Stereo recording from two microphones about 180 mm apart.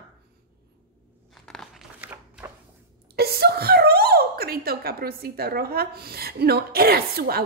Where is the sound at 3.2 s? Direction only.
60° right (ahead or behind).